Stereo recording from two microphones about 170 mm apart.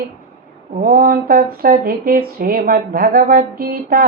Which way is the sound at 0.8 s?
55° right (ahead or behind).